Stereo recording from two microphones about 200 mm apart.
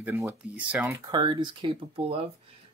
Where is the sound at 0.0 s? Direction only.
10° right (ahead or behind).